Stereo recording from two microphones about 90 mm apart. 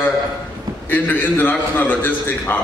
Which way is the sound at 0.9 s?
20° left (ahead or behind).